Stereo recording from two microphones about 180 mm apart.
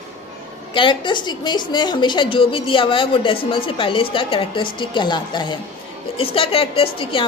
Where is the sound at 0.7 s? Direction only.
25° left (ahead or behind).